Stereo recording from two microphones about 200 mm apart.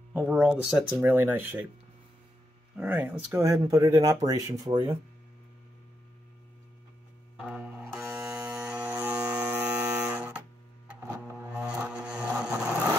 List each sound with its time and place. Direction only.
0.1 s speech: 5° right (ahead or behind)
2.8 s speech: 10° right (ahead or behind)
7.3 s music: 5° right (ahead or behind)
8.5 s a sound: 5° right (ahead or behind)
9.0 s music: 5° right (ahead or behind)
10.9 s a sound: 10° right (ahead or behind)